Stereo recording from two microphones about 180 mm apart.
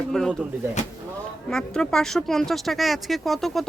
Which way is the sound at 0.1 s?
Centre (ahead or behind).